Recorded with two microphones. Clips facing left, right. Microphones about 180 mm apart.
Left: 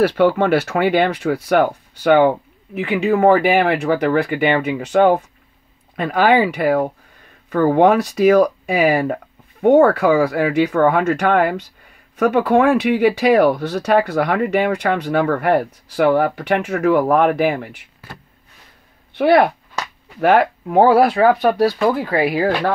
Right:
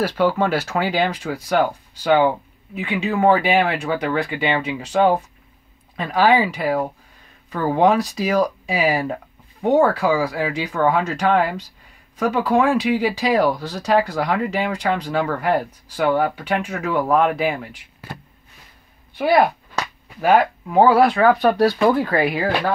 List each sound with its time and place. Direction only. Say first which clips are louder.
0.1 s speech: left 4 dB; 60° left (ahead or behind)
19.1 s speech: left 3 dB; 65° left (ahead or behind); by 21.2 s 45° left (ahead or behind)
21.4 s speech: left 1 dB; 10° left (ahead or behind)